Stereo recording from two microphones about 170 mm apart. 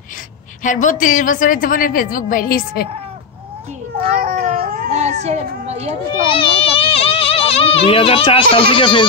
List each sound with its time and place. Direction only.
0.7 s a woman's voice: 50° left (ahead or behind)
4.0 s cat: 60° right (ahead or behind); by 5.9 s 40° right (ahead or behind)
6.2 s speech: 30° left (ahead or behind)